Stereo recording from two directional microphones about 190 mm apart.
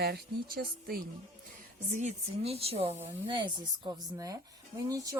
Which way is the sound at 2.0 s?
35° right (ahead or behind).